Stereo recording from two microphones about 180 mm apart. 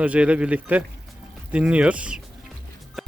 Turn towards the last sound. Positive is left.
turn(degrees=-5)  # may be behind; listen again after turning